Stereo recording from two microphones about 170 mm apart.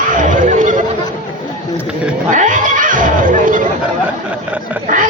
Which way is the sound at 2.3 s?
50° right (ahead or behind).